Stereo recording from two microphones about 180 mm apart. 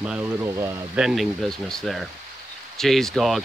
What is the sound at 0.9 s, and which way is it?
Speech, centre (ahead or behind).